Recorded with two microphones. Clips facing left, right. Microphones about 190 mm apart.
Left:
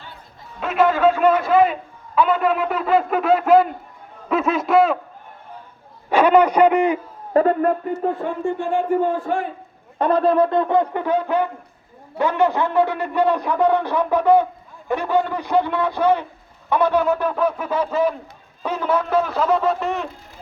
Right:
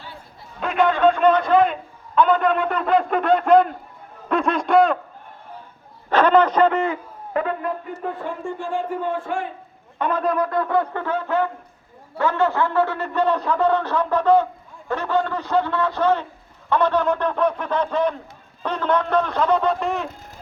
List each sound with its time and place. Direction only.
0.6 s a man's voice: 5° left (ahead or behind)
6.1 s a man's voice: 10° left (ahead or behind)
7.3 s a man's voice: 40° left (ahead or behind)
8.4 s a man's voice: 65° left (ahead or behind)
9.1 s a man's voice: 40° left (ahead or behind); by 20.1 s centre (ahead or behind)